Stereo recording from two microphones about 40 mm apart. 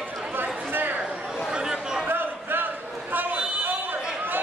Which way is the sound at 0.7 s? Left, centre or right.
Right.